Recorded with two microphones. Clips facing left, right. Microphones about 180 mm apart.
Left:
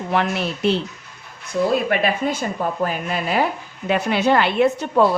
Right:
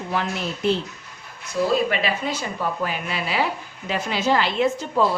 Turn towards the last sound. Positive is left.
turn(degrees=60)  # may be behind; listen again after turning